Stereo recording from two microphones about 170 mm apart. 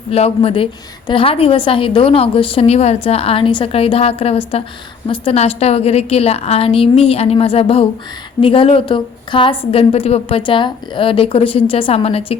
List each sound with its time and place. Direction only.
0.1 s a woman's voice: 35° left (ahead or behind)